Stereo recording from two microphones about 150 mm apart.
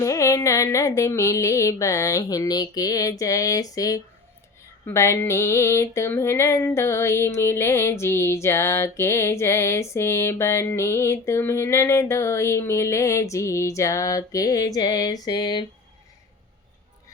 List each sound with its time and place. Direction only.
0.0 s female singing: 20° left (ahead or behind)